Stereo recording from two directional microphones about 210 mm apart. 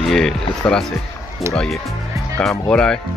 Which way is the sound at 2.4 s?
5° left (ahead or behind).